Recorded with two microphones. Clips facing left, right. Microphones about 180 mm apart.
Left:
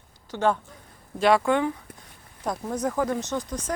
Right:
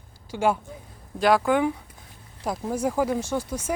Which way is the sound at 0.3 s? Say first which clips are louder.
Even; 10° right (ahead or behind).